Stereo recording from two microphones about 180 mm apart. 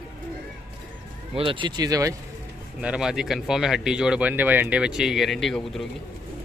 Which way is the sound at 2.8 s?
5° right (ahead or behind).